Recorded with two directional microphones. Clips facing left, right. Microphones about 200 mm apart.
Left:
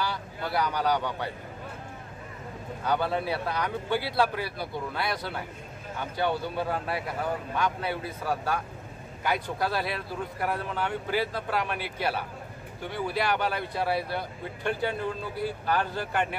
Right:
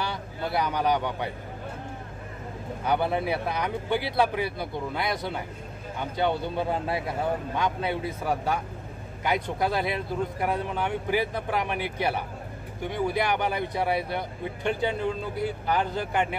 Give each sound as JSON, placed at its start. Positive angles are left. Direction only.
{"t": 0.0, "sound": "speech", "side_deg": -20}
{"t": 2.8, "sound": "speech", "side_deg": -20}